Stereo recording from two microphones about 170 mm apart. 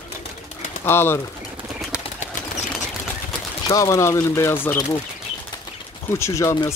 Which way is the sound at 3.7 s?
20° left (ahead or behind).